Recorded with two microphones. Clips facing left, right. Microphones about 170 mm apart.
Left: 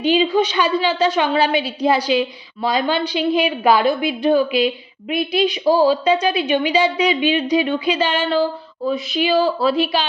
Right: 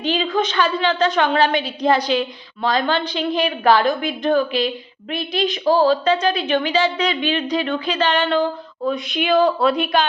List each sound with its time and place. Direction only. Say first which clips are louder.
0.0 s a woman's voice: left 4 dB; 10° left (ahead or behind)